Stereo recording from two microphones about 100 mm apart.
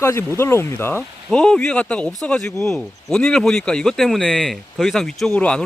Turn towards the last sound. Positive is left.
turn(degrees=10)  # may be behind; listen again after turning